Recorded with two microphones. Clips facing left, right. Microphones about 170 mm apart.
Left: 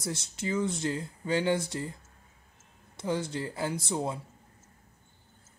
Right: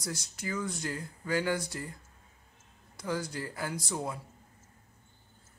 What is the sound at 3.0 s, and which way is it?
Speech, 25° left (ahead or behind).